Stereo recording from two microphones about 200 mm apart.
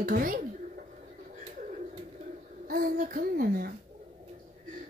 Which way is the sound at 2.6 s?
45° right (ahead or behind).